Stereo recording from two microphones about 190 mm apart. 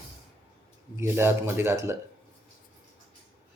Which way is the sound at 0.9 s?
10° right (ahead or behind).